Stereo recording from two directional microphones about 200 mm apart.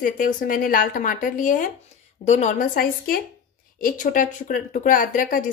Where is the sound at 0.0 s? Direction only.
45° left (ahead or behind).